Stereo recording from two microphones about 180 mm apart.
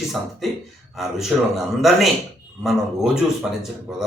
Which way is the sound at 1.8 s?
Centre (ahead or behind).